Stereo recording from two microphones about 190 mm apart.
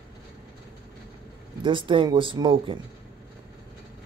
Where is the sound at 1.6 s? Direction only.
25° right (ahead or behind).